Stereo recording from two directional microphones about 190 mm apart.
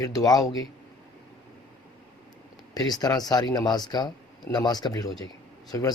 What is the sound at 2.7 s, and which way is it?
Speech, 20° left (ahead or behind).